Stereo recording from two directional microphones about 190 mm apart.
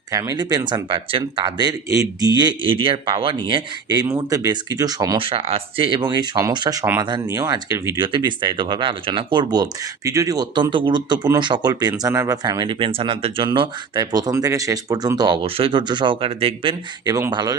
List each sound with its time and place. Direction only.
0.1 s speech: 20° right (ahead or behind)
17.2 s speech: 20° right (ahead or behind)